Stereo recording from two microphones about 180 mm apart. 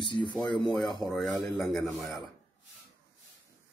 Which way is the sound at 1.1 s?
Centre (ahead or behind).